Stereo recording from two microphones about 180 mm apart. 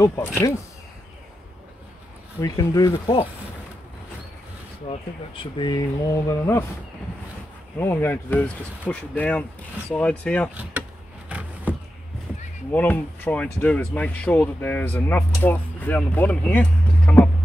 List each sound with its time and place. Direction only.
0.0 s speech: 15° left (ahead or behind)
2.4 s speech: 20° left (ahead or behind)
4.8 s speech: 30° left (ahead or behind)
7.8 s speech: 10° left (ahead or behind)
10.5 s speech: 10° right (ahead or behind)
11.2 s a sound: 5° right (ahead or behind)
12.7 s speech: 10° left (ahead or behind)